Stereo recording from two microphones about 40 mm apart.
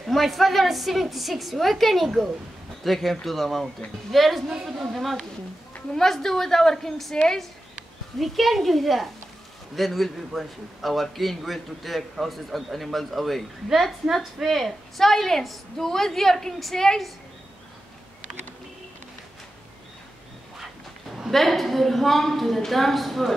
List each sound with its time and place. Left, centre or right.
0.1 s a man's voice: centre
8.2 s a man's voice: centre
20.5 s a woman's voice: centre